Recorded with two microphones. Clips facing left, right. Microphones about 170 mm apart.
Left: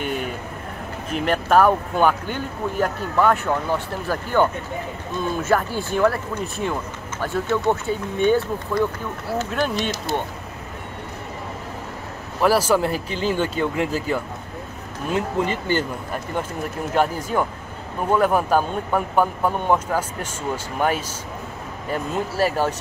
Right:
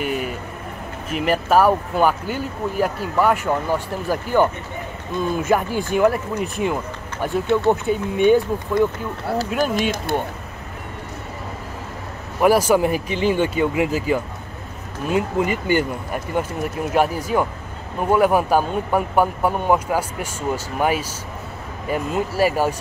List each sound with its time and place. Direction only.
0.0 s a sound: 5° right (ahead or behind)
1.1 s speech: 5° right (ahead or behind)
9.6 s speech: 50° right (ahead or behind)
12.4 s speech: 10° right (ahead or behind)
16.9 s speech: 10° right (ahead or behind)